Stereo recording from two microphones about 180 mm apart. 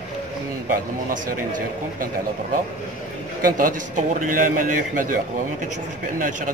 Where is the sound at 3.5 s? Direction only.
50° right (ahead or behind).